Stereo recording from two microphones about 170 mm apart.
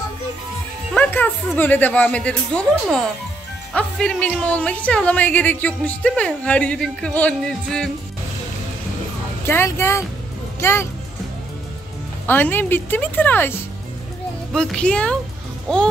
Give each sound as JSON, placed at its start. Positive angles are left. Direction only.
{"t": 0.9, "sound": "music", "side_deg": 10}
{"t": 1.6, "sound": "a woman's voice", "side_deg": 10}
{"t": 9.5, "sound": "a woman's voice", "side_deg": 15}
{"t": 12.3, "sound": "a woman's voice", "side_deg": 10}